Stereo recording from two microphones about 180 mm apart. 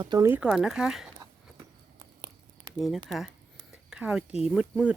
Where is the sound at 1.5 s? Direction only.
25° right (ahead or behind).